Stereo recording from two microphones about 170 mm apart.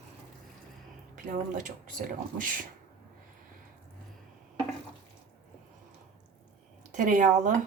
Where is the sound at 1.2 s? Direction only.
50° right (ahead or behind).